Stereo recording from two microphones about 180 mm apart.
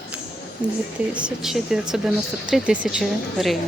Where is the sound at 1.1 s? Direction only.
5° right (ahead or behind).